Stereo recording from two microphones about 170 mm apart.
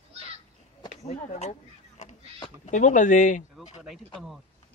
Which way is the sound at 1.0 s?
40° left (ahead or behind).